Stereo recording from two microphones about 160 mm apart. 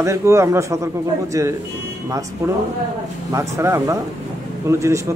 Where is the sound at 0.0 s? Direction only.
15° right (ahead or behind).